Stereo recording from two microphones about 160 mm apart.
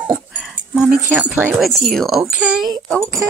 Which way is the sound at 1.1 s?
10° right (ahead or behind).